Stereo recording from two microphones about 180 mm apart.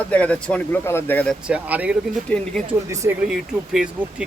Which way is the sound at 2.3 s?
5° left (ahead or behind).